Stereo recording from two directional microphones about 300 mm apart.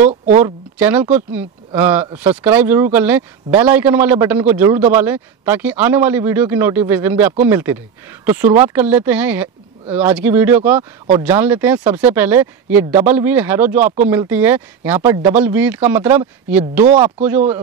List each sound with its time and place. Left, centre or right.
0.4 s speech: centre